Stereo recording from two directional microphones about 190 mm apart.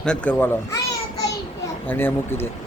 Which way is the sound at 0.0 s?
5° left (ahead or behind).